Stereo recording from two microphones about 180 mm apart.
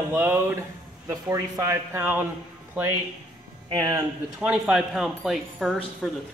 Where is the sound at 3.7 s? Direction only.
20° right (ahead or behind).